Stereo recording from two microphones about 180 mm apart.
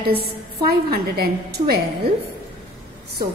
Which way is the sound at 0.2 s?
60° right (ahead or behind).